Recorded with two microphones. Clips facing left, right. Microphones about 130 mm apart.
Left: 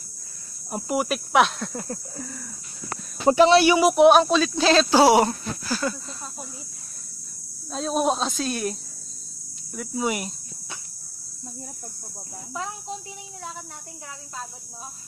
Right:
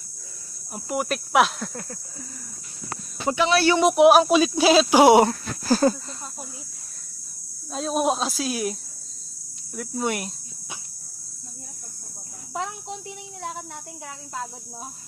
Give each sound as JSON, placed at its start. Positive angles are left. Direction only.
{"t": 0.9, "sound": "speech", "side_deg": 5}
{"t": 3.3, "sound": "speech", "side_deg": 40}
{"t": 3.5, "sound": "speech", "side_deg": 15}
{"t": 3.8, "sound": "speech", "side_deg": 0}
{"t": 4.3, "sound": "speech", "side_deg": -10}
{"t": 5.7, "sound": "speech", "side_deg": -40}
{"t": 7.7, "sound": "speech", "side_deg": 0}
{"t": 9.8, "sound": "speech", "side_deg": 0}